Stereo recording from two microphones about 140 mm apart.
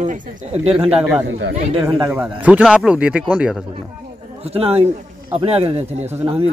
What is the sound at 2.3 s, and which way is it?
A man's voice, 10° right (ahead or behind).